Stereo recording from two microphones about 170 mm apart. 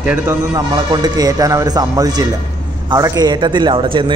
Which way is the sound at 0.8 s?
25° right (ahead or behind).